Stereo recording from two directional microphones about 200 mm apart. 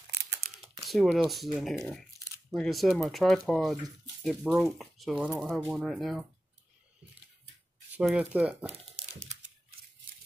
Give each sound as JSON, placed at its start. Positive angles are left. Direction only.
{"t": 0.8, "sound": "speech", "side_deg": 0}
{"t": 7.9, "sound": "speech", "side_deg": -5}